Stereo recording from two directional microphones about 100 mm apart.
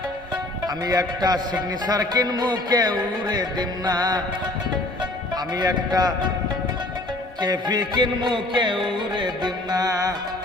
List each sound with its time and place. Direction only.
0.9 s a man's voice: 40° right (ahead or behind)
1.9 s music: 40° right (ahead or behind)
5.5 s music: 40° right (ahead or behind)
7.4 s music: 45° right (ahead or behind)